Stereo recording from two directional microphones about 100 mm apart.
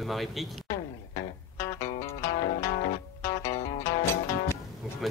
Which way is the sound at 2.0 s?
80° left.